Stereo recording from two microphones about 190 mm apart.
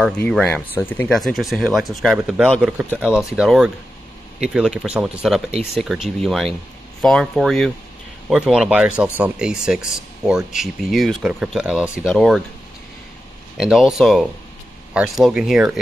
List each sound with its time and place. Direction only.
0.0 s speech: 5° left (ahead or behind)
13.6 s speech: centre (ahead or behind)